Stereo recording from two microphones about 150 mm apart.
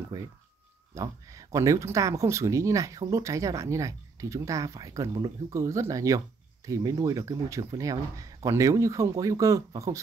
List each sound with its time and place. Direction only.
0.1 s speech: 20° right (ahead or behind)